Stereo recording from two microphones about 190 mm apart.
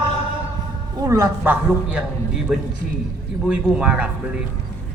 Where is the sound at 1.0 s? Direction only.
15° right (ahead or behind).